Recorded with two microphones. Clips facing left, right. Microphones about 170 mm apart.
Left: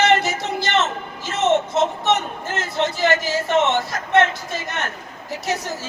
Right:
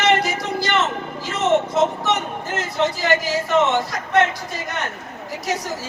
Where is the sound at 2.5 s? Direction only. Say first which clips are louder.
Right 1 dB; 15° right (ahead or behind).